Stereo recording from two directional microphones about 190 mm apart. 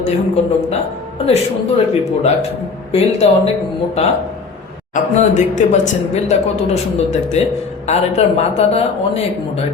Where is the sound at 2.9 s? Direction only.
30° left (ahead or behind).